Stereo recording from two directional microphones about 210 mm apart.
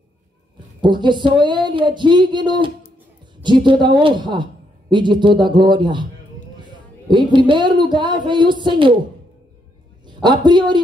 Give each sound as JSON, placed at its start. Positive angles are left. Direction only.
{"t": 0.7, "sound": "a woman's voice", "side_deg": -20}
{"t": 10.0, "sound": "a woman's voice", "side_deg": -20}